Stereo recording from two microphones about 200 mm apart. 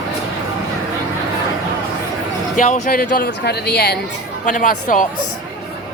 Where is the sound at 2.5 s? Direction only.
40° left (ahead or behind).